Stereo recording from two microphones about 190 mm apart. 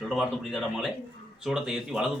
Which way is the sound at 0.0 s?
Centre (ahead or behind).